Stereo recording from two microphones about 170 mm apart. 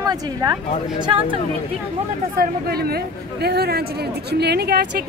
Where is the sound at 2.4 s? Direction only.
65° right (ahead or behind).